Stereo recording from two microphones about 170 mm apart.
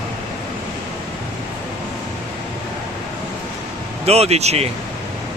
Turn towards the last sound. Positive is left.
turn(degrees=-40)  # may be behind; listen again after turning